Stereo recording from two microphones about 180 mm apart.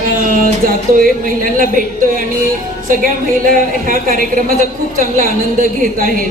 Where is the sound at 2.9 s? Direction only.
50° right (ahead or behind).